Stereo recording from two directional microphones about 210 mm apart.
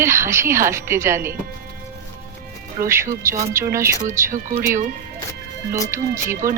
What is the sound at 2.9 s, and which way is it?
A woman's voice, 10° right (ahead or behind).